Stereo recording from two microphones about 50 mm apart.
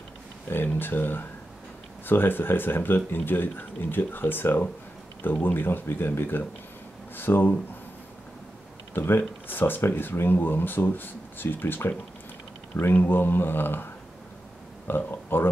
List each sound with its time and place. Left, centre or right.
0.7 s speech: left
8.9 s speech: left
14.9 s speech: left